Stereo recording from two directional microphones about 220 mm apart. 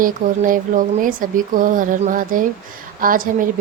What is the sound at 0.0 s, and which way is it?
Speech, 40° right (ahead or behind).